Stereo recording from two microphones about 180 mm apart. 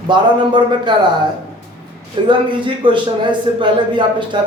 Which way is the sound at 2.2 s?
25° right (ahead or behind).